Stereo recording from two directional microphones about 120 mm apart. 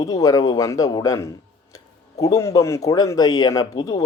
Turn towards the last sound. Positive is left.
turn(degrees=30)  # may be behind; listen again after turning